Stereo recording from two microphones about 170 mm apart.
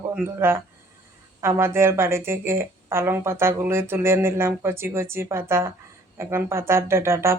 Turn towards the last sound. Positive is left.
turn(degrees=-15)  # may be behind; listen again after turning